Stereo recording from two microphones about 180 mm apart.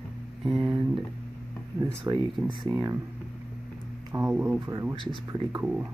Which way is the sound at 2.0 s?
25° right (ahead or behind).